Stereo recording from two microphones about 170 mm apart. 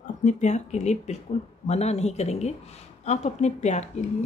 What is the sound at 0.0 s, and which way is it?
Speech, 45° left (ahead or behind).